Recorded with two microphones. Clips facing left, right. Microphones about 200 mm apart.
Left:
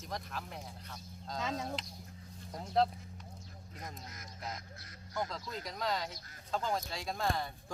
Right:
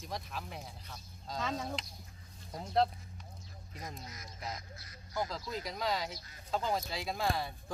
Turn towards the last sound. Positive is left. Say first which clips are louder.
# right 1 dB
turn(degrees=-5)  # may be behind; listen again after turning